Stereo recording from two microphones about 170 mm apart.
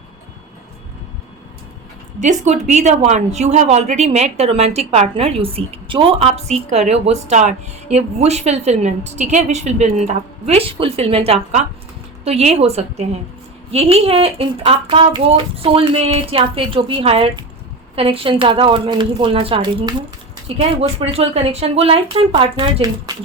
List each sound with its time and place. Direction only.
2.2 s a woman's voice: 45° right (ahead or behind); by 23.1 s 25° right (ahead or behind)